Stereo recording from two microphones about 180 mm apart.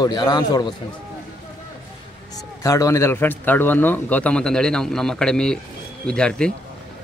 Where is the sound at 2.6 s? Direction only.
20° left (ahead or behind).